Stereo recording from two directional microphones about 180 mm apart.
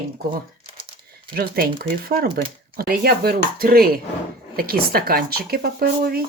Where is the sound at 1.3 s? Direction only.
55° right (ahead or behind).